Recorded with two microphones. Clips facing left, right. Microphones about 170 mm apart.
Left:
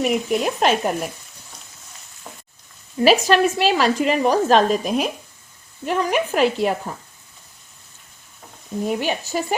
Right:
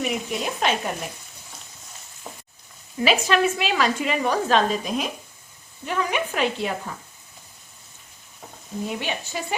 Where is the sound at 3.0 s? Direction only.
40° left (ahead or behind).